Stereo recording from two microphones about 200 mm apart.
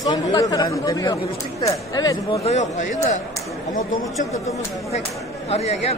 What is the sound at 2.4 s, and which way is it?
Speech, 35° left (ahead or behind).